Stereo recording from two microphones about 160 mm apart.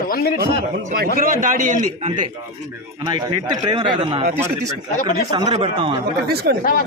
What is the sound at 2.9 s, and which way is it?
A man's voice, 30° right (ahead or behind).